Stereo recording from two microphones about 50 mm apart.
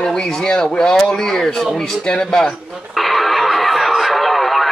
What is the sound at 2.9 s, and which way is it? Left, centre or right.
Radio, centre.